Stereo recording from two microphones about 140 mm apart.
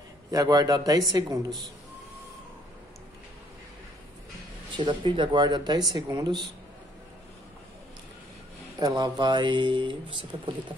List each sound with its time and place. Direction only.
0.3 s a man's voice: 25° right (ahead or behind)
4.7 s speech: 35° right (ahead or behind)
8.7 s speech: 30° right (ahead or behind)